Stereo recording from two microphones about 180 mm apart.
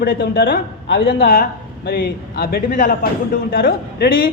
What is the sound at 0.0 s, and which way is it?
A man's voice, 60° left (ahead or behind).